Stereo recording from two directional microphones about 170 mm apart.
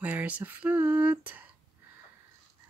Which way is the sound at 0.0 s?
10° right (ahead or behind).